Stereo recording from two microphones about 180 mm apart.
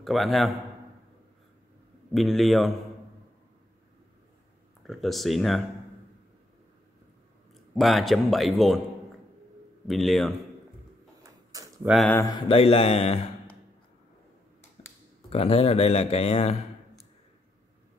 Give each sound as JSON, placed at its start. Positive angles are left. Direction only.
{"t": 0.0, "sound": "a man's voice", "side_deg": 0}
{"t": 2.1, "sound": "a man's voice", "side_deg": 0}
{"t": 4.8, "sound": "a man's voice", "side_deg": 0}
{"t": 7.7, "sound": "a man's voice", "side_deg": 0}
{"t": 9.8, "sound": "a man's voice", "side_deg": 0}
{"t": 11.2, "sound": "a sound", "side_deg": -20}
{"t": 11.8, "sound": "a man's voice", "side_deg": 0}
{"t": 12.4, "sound": "speech", "side_deg": 35}
{"t": 15.2, "sound": "speech", "side_deg": 35}